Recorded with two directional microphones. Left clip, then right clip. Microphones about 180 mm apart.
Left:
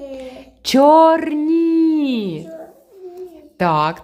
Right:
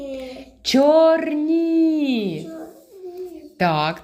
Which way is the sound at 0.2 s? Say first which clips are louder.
Even; 25° left (ahead or behind).